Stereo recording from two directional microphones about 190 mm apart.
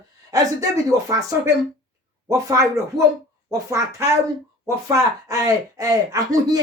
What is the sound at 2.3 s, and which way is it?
Speech, 15° right (ahead or behind).